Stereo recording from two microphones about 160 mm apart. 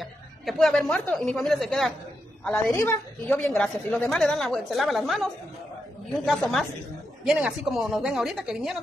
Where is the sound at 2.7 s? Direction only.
15° left (ahead or behind).